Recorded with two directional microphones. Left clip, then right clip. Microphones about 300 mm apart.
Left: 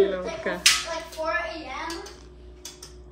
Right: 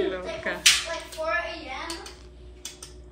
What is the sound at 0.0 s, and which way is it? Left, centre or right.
Finger snapping, centre.